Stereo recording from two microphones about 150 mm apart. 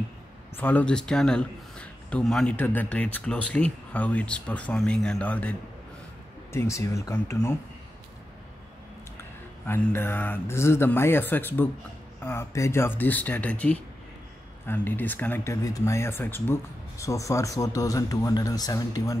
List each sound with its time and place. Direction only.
0.6 s a man's voice: 10° left (ahead or behind)
9.7 s a man's voice: 15° left (ahead or behind)